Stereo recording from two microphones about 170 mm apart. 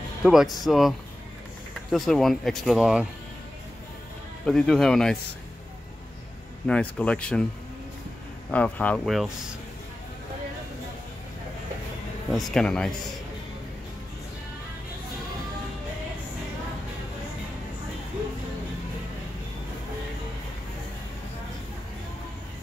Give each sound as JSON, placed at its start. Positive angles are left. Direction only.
{"t": 0.2, "sound": "speech", "side_deg": 0}
{"t": 4.5, "sound": "speech", "side_deg": 5}
{"t": 6.7, "sound": "speech", "side_deg": 5}
{"t": 8.5, "sound": "speech", "side_deg": 5}
{"t": 12.3, "sound": "speech", "side_deg": 0}